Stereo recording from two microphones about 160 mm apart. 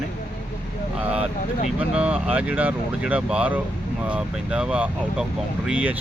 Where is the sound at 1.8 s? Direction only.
5° right (ahead or behind).